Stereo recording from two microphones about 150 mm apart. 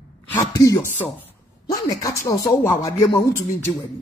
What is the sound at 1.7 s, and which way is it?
Speech, 20° left (ahead or behind).